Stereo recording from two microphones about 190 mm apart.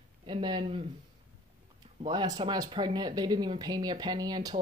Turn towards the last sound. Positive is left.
turn(degrees=-20)  # may be behind; listen again after turning